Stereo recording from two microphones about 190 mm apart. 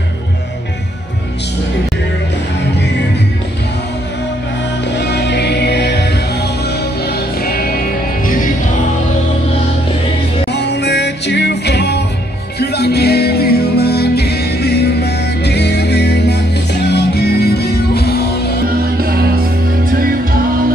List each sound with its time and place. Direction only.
4.9 s music: 60° left (ahead or behind)
10.5 s music: 65° left (ahead or behind)
18.9 s music: 55° right (ahead or behind)